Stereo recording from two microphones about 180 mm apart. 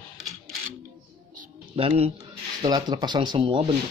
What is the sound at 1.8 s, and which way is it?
Speech, 35° right (ahead or behind).